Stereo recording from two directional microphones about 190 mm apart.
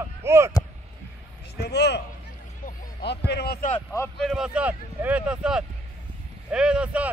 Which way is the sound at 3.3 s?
60° left (ahead or behind).